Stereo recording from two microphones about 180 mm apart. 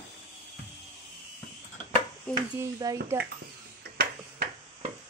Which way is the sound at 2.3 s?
20° right (ahead or behind).